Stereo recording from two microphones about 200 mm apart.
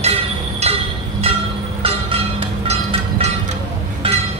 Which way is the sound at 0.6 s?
30° right (ahead or behind).